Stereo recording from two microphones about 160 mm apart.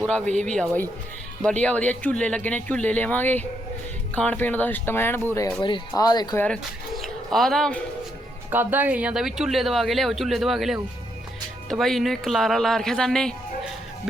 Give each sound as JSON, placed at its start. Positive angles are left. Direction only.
{"t": 0.1, "sound": "speech", "side_deg": 5}
{"t": 5.6, "sound": "speech", "side_deg": 25}
{"t": 6.4, "sound": "speech", "side_deg": 5}
{"t": 8.4, "sound": "speech", "side_deg": -10}